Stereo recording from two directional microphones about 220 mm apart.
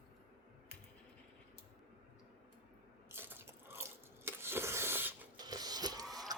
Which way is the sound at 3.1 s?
10° right (ahead or behind).